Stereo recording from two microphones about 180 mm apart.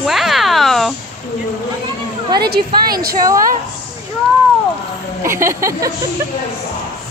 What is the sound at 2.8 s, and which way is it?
Speech, 55° right (ahead or behind).